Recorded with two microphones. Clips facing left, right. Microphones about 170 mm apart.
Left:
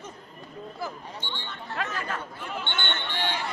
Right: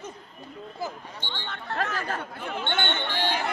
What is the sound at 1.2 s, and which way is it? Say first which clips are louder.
Speech: right 5 dB; 70° right (ahead or behind).